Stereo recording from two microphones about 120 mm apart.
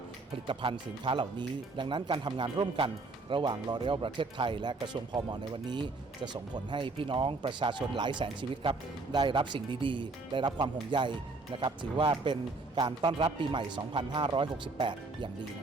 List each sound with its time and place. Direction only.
0.4 s speech: 45° right (ahead or behind)